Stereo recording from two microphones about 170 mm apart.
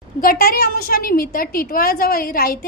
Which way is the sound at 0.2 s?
60° left (ahead or behind).